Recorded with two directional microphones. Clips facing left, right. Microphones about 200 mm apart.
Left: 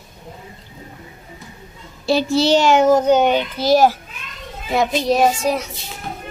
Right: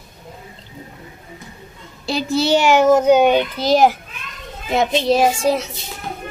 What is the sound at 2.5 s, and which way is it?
A child's voice, 10° right (ahead or behind).